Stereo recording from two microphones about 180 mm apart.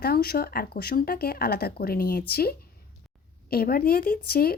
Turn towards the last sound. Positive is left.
turn(degrees=55)  # may be behind; listen again after turning